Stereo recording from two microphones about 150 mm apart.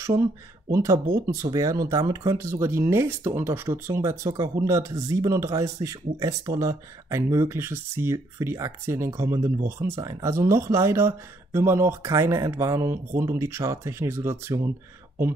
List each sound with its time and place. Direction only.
0.0 s speech: 20° right (ahead or behind)